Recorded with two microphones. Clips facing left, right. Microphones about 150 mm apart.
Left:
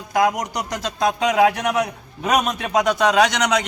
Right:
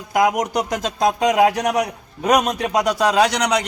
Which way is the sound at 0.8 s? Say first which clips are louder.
Even; 40° right (ahead or behind).